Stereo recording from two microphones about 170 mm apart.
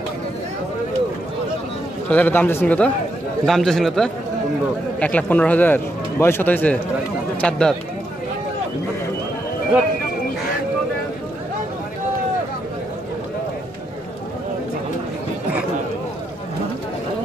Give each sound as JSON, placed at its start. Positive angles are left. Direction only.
{"t": 2.0, "sound": "a man's voice", "side_deg": 10}